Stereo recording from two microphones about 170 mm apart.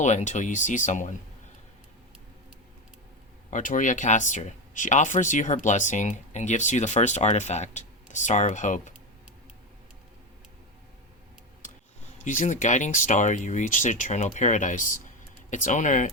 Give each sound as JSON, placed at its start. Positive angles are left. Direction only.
{"t": 0.0, "sound": "speech", "side_deg": 45}
{"t": 3.5, "sound": "speech", "side_deg": 50}
{"t": 12.2, "sound": "speech", "side_deg": 50}